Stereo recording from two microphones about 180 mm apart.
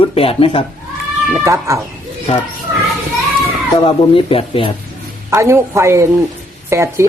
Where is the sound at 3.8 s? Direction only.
30° left (ahead or behind).